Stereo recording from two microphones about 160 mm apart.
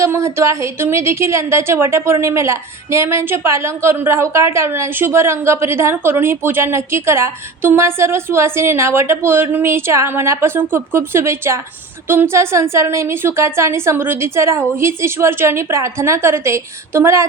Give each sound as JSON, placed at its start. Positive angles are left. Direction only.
{"t": 0.0, "sound": "a woman's voice", "side_deg": -15}